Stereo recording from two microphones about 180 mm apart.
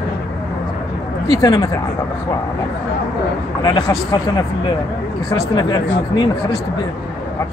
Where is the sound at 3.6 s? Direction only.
25° left (ahead or behind).